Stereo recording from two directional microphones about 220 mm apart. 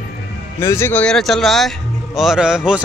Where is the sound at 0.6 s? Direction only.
10° left (ahead or behind).